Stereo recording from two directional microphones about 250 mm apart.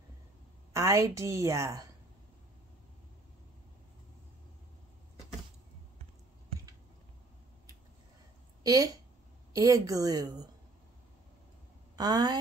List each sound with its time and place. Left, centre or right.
0.7 s a woman's voice: centre
8.6 s a woman's voice: centre
12.0 s a woman's voice: centre